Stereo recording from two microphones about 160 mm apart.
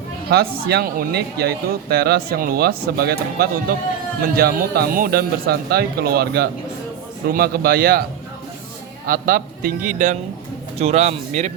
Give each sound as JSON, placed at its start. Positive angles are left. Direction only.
{"t": 0.3, "sound": "speech", "side_deg": -90}
{"t": 9.0, "sound": "a man's voice", "side_deg": -65}
{"t": 10.8, "sound": "speech", "side_deg": -40}